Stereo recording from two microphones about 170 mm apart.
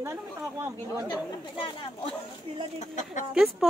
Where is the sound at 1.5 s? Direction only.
30° left (ahead or behind).